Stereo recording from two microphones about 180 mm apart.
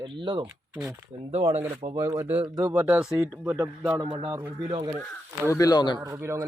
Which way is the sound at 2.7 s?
10° right (ahead or behind).